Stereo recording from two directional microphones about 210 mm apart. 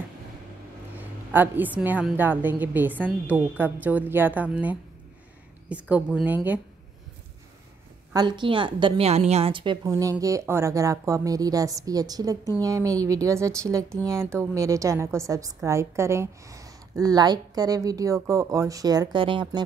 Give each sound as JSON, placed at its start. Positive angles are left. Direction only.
{"t": 0.9, "sound": "a woman's voice", "side_deg": -10}
{"t": 8.1, "sound": "a woman's voice", "side_deg": -20}